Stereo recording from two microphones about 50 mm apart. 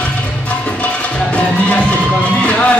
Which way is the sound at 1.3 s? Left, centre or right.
Left.